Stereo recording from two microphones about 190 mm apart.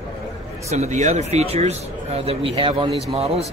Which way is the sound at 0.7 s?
35° right (ahead or behind).